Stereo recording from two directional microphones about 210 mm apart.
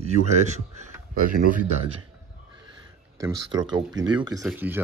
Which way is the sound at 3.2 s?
20° right (ahead or behind).